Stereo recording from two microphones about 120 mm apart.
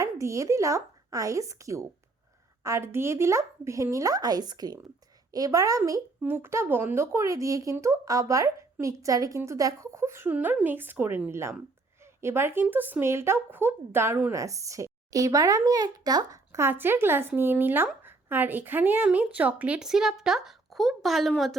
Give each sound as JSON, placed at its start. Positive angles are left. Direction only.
{"t": 0.0, "sound": "a woman's voice", "side_deg": -25}